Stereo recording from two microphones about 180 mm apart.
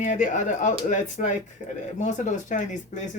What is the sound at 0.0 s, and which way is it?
Speech, 45° left (ahead or behind).